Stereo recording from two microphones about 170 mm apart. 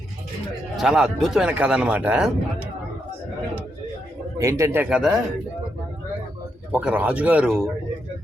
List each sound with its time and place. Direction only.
0.8 s a man's voice: 5° right (ahead or behind)
4.4 s speech: 15° right (ahead or behind)
6.7 s speech: 5° right (ahead or behind)